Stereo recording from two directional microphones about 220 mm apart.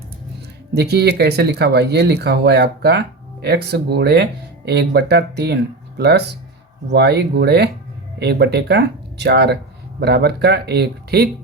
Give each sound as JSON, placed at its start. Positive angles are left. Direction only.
{"t": 0.7, "sound": "speech", "side_deg": -50}